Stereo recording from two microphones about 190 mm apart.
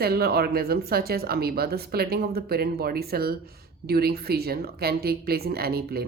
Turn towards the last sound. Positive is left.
turn(degrees=-55)  # may be behind; listen again after turning